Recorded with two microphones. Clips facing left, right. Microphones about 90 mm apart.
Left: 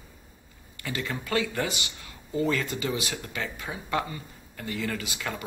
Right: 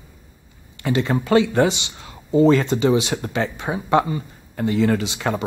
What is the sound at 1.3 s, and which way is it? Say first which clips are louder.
Speech: right 11 dB; 25° right (ahead or behind).